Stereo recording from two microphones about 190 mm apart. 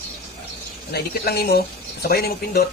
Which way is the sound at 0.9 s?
55° left (ahead or behind).